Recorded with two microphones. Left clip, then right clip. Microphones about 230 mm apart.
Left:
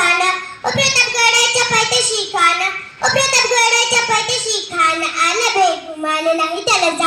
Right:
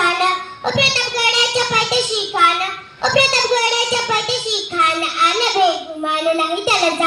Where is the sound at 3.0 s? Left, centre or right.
Left.